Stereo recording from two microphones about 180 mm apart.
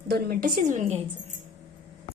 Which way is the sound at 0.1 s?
55° right (ahead or behind).